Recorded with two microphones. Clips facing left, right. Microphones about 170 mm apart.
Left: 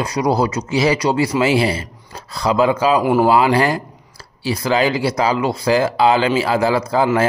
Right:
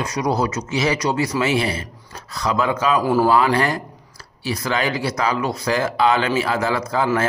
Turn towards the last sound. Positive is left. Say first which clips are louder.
# left 4 dB
turn(degrees=30)  # may be behind; listen again after turning